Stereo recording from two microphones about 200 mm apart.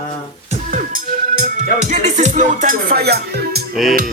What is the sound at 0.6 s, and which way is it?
Music, 40° right (ahead or behind).